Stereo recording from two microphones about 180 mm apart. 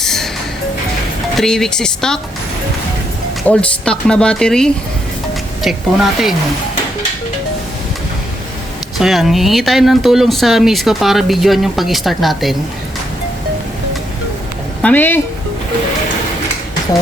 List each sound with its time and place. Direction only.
0.0 s music: centre (ahead or behind)
1.4 s speech: 5° left (ahead or behind)
3.4 s speech: 5° left (ahead or behind)
9.0 s speech: centre (ahead or behind)
14.8 s speech: 10° left (ahead or behind)